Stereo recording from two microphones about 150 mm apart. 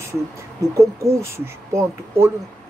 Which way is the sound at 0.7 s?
20° right (ahead or behind).